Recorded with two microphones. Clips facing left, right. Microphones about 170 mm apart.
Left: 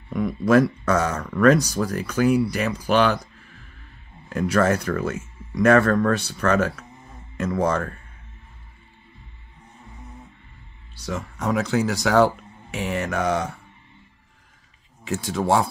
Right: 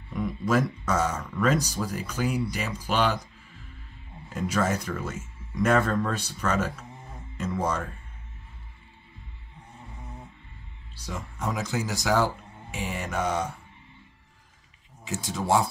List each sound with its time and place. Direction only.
0.1 s speech: 70° left (ahead or behind)
4.3 s speech: 70° left (ahead or behind)
11.0 s speech: 75° left (ahead or behind)
12.7 s speech: 75° left (ahead or behind)
15.0 s speech: 60° left (ahead or behind)